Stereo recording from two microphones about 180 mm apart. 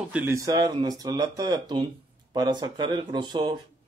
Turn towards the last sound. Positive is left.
turn(degrees=-25)  # may be behind; listen again after turning